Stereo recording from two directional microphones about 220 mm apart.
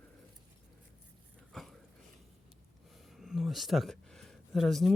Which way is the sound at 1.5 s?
Centre (ahead or behind).